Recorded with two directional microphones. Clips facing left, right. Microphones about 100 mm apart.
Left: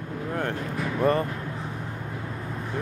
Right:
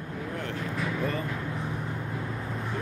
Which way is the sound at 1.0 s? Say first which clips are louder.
Left 12 dB; 55° left (ahead or behind).